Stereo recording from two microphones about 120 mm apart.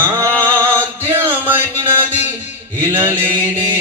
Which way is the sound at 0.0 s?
20° right (ahead or behind).